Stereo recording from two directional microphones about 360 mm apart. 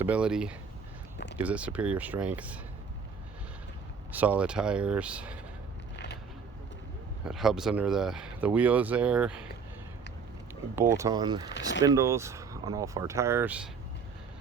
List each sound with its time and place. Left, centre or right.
0.0 s speech: centre
4.1 s speech: centre
7.3 s speech: centre
10.5 s speech: centre
11.7 s speech: left
11.9 s speech: centre